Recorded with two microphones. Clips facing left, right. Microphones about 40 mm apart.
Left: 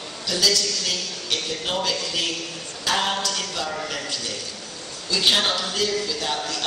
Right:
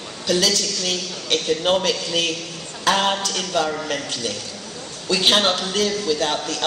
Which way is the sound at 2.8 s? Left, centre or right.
Right.